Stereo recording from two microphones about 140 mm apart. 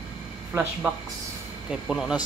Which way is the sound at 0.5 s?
15° right (ahead or behind).